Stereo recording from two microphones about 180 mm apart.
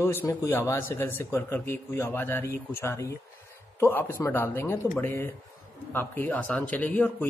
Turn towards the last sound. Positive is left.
turn(degrees=10)  # may be behind; listen again after turning